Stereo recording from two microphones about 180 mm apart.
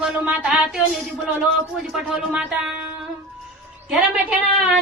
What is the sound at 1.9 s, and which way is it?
Speech, 5° right (ahead or behind).